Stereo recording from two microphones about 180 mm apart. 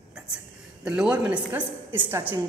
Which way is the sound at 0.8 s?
5° right (ahead or behind).